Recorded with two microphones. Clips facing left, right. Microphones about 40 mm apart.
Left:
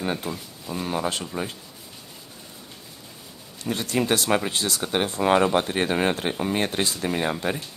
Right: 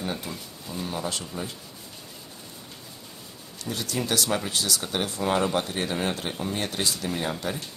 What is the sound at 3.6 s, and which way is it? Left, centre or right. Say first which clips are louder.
Speech: left 5 dB; left.